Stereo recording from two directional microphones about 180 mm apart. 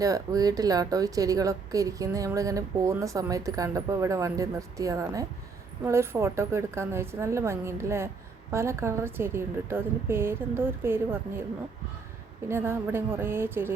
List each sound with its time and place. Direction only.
0.0 s a woman's voice: 20° right (ahead or behind)
12.5 s a woman's voice: 15° right (ahead or behind)